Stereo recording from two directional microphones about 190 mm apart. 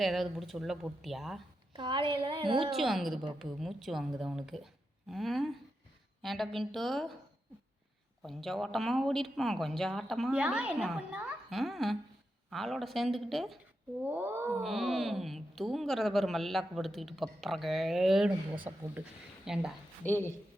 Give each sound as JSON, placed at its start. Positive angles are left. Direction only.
{"t": 0.0, "sound": "speech", "side_deg": 0}
{"t": 1.7, "sound": "a woman's voice", "side_deg": -25}
{"t": 2.7, "sound": "speech", "side_deg": 0}
{"t": 8.2, "sound": "speech", "side_deg": 0}
{"t": 14.0, "sound": "speech", "side_deg": -10}
{"t": 14.6, "sound": "speech", "side_deg": 0}
{"t": 20.1, "sound": "speech", "side_deg": 10}